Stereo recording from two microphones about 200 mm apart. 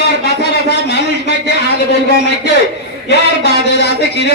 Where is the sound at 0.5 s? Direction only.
60° left (ahead or behind).